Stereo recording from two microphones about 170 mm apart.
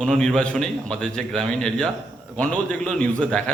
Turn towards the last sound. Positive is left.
turn(degrees=5)  # may be behind; listen again after turning